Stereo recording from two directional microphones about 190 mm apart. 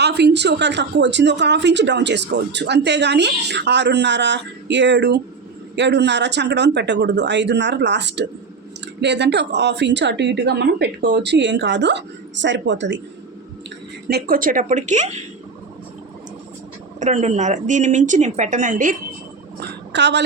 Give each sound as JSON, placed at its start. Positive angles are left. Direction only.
{"t": 0.0, "sound": "speech", "side_deg": -60}
{"t": 14.1, "sound": "speech", "side_deg": -55}
{"t": 17.0, "sound": "speech", "side_deg": -40}
{"t": 19.5, "sound": "a sound", "side_deg": -65}